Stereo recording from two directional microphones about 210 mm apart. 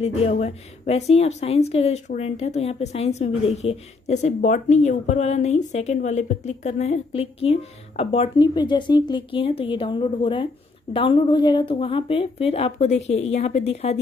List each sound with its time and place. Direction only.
0.0 s a woman's voice: 30° left (ahead or behind)